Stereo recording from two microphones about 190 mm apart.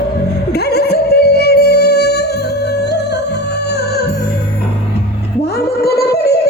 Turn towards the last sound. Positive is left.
turn(degrees=60)  # may be behind; listen again after turning